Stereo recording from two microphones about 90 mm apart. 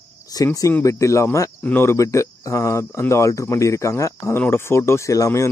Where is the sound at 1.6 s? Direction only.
25° left (ahead or behind).